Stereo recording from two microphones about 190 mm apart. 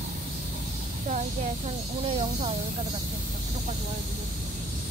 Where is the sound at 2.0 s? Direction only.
30° right (ahead or behind).